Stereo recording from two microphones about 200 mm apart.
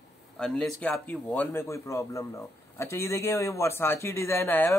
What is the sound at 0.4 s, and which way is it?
A man's voice, 5° left (ahead or behind).